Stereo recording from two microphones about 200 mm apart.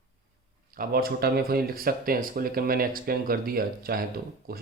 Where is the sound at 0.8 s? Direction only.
50° right (ahead or behind).